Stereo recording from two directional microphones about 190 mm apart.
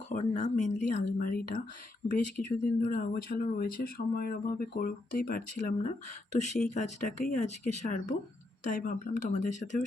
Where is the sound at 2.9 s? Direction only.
50° left (ahead or behind).